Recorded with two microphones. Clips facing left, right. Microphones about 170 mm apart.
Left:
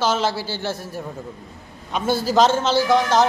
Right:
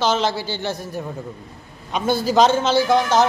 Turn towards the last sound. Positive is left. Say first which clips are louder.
# right 1 dB
turn(degrees=0)  # may be behind; listen again after turning